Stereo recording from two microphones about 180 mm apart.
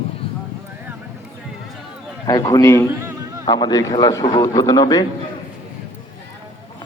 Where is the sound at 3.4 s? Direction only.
25° left (ahead or behind).